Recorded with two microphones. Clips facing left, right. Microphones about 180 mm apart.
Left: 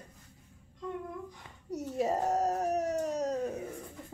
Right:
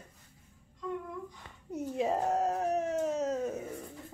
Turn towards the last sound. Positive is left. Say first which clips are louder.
# even
turn(degrees=-5)  # may be behind; listen again after turning